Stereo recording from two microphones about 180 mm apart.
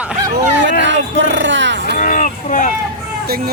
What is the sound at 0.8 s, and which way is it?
Speech, 90° right.